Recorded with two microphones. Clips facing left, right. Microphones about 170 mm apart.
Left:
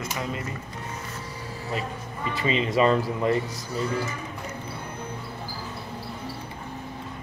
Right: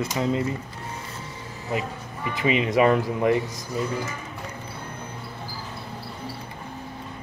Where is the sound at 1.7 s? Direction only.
15° right (ahead or behind).